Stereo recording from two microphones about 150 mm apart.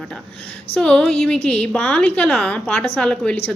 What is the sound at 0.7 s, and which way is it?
A woman's voice, 5° left (ahead or behind).